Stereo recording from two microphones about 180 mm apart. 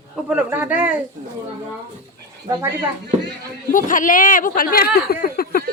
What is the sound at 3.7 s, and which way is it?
Speech, 45° left (ahead or behind).